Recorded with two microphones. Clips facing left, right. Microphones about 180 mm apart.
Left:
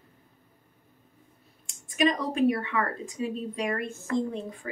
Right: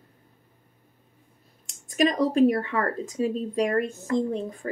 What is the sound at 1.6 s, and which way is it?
Speech, 40° right (ahead or behind).